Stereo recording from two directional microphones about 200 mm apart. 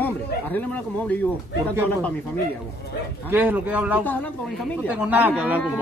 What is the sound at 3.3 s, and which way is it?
Speech, 10° right (ahead or behind).